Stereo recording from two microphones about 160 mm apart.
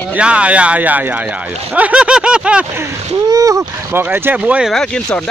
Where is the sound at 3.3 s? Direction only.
20° right (ahead or behind).